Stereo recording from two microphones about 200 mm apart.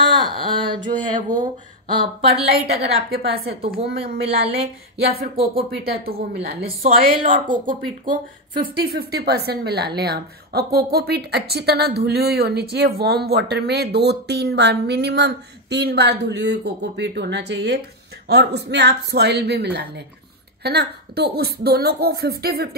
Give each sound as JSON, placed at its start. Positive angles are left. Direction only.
{"t": 0.0, "sound": "a sound", "side_deg": -25}
{"t": 1.3, "sound": "speech", "side_deg": -20}
{"t": 2.7, "sound": "speech", "side_deg": -50}
{"t": 4.0, "sound": "speech", "side_deg": -30}
{"t": 5.0, "sound": "a woman's voice", "side_deg": -50}
{"t": 8.9, "sound": "speech", "side_deg": -50}